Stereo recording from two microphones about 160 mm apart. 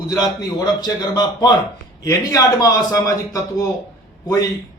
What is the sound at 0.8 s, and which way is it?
A man's voice, 25° left (ahead or behind).